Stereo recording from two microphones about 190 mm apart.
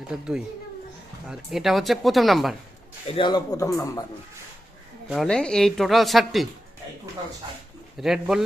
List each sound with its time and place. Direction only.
0.1 s speech: 5° right (ahead or behind)
3.2 s a man's voice: 20° left (ahead or behind)
5.0 s speech: centre (ahead or behind)
8.0 s speech: centre (ahead or behind)